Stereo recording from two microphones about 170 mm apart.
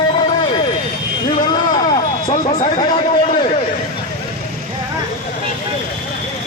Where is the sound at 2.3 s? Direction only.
40° left (ahead or behind).